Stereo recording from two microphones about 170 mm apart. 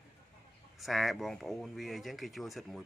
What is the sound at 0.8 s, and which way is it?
Speech, centre (ahead or behind).